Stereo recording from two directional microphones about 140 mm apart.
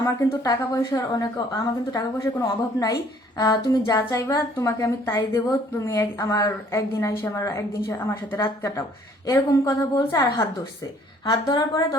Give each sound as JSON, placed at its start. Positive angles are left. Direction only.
{"t": 0.0, "sound": "a woman's voice", "side_deg": 20}